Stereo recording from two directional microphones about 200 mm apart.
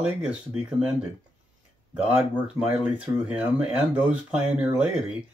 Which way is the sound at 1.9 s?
5° right (ahead or behind).